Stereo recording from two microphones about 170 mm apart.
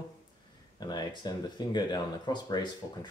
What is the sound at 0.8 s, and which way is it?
Speech, 25° left (ahead or behind).